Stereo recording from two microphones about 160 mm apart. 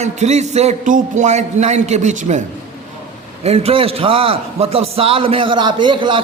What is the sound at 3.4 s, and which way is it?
A man's voice, 40° right (ahead or behind).